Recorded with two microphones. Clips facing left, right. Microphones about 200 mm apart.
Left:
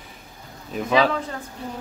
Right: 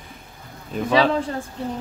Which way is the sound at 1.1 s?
30° right (ahead or behind).